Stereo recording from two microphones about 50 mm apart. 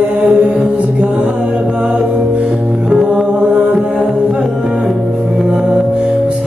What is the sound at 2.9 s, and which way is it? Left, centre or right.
Music, centre.